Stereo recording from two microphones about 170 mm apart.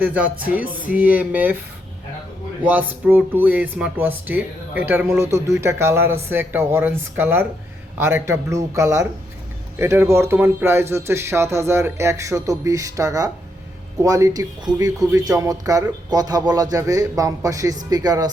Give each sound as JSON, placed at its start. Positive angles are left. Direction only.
{"t": 0.0, "sound": "a man's voice", "side_deg": -10}
{"t": 2.6, "sound": "a man's voice", "side_deg": -10}